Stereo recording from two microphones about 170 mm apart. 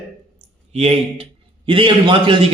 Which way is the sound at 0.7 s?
35° right (ahead or behind).